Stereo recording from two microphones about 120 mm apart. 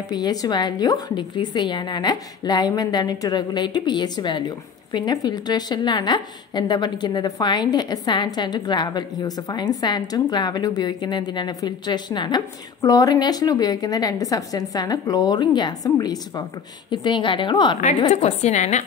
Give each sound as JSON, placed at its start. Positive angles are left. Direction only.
{"t": 0.1, "sound": "a woman's voice", "side_deg": 35}
{"t": 18.1, "sound": "a woman's voice", "side_deg": 70}